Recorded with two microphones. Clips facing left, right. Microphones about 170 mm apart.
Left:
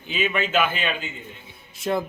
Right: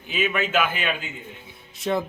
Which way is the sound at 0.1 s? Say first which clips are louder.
Even; 5° right (ahead or behind).